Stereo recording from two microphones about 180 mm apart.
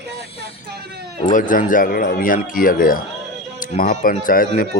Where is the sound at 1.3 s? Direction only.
45° left (ahead or behind).